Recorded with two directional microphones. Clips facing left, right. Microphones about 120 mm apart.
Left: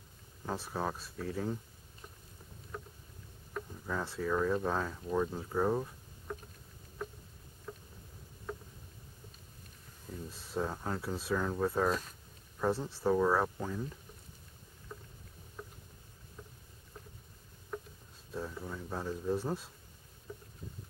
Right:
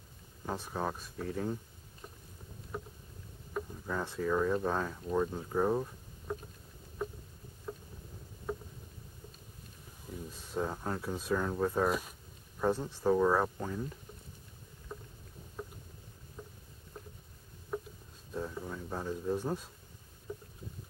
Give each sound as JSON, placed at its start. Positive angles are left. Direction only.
{"t": 0.5, "sound": "speech", "side_deg": 0}
{"t": 2.7, "sound": "boat", "side_deg": -10}
{"t": 3.5, "sound": "speech", "side_deg": 0}
{"t": 6.3, "sound": "vehicle", "side_deg": -15}
{"t": 7.7, "sound": "boat", "side_deg": -10}
{"t": 8.5, "sound": "a sound", "side_deg": -10}
{"t": 10.3, "sound": "speech", "side_deg": 0}
{"t": 11.8, "sound": "speech", "side_deg": -10}
{"t": 14.9, "sound": "boat", "side_deg": -10}
{"t": 16.4, "sound": "a sound", "side_deg": -15}
{"t": 17.7, "sound": "a sound", "side_deg": -10}
{"t": 20.3, "sound": "boat", "side_deg": -15}